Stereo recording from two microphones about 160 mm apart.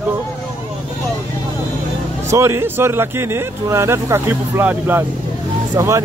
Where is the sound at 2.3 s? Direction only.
15° right (ahead or behind).